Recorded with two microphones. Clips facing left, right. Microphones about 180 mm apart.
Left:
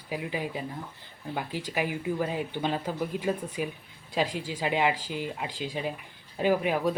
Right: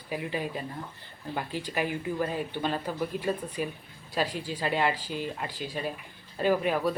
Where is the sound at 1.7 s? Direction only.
15° left (ahead or behind).